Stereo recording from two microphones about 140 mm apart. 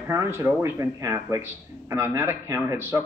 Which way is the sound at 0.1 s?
20° right (ahead or behind).